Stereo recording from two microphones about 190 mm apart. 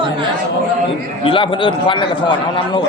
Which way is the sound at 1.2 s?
25° left (ahead or behind).